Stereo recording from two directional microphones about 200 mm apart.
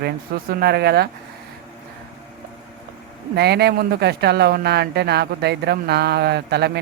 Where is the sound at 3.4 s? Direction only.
55° right (ahead or behind).